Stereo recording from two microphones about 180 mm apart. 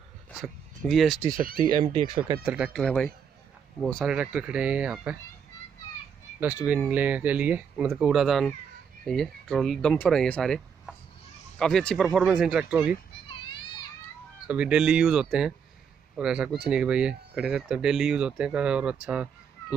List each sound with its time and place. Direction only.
0.4 s speech: centre (ahead or behind)
1.7 s speech: 30° right (ahead or behind)
2.4 s speech: 5° right (ahead or behind)
6.6 s speech: 10° right (ahead or behind)
13.3 s a sound: 25° left (ahead or behind)
14.5 s speech: 5° right (ahead or behind)